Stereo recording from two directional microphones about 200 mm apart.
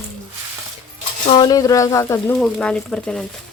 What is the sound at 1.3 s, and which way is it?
Speech, 20° left (ahead or behind).